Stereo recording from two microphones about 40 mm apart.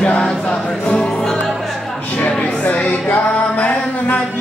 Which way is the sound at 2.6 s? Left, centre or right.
Left.